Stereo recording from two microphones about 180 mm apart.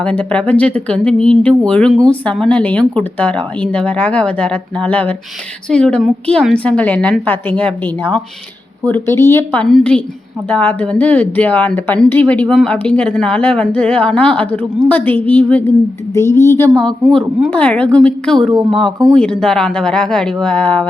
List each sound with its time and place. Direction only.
0.0 s speech: 5° left (ahead or behind)
16.7 s speech: 5° left (ahead or behind)